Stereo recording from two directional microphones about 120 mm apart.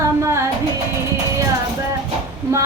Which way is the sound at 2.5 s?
25° right (ahead or behind).